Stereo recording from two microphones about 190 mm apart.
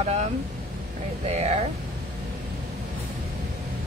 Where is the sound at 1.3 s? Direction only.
35° right (ahead or behind).